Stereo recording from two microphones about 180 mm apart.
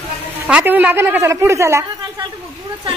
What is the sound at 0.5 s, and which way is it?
A woman's voice, 10° right (ahead or behind).